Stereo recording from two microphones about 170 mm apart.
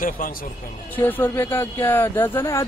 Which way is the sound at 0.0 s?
55° left (ahead or behind).